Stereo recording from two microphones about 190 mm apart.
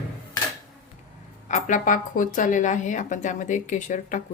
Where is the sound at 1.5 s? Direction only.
40° left (ahead or behind).